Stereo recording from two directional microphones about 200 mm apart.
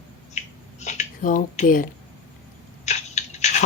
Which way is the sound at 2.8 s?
35° left (ahead or behind).